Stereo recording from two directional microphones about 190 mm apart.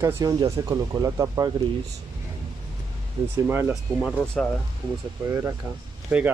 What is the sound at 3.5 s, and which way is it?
Speech, 10° right (ahead or behind).